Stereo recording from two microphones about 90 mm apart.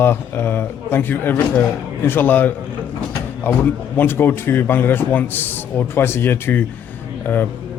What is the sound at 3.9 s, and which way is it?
Speech, 25° left (ahead or behind).